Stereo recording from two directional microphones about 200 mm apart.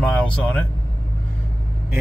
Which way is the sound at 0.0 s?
5° left (ahead or behind).